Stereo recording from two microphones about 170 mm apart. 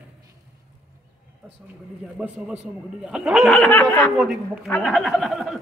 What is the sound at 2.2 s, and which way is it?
A man's voice, 5° right (ahead or behind).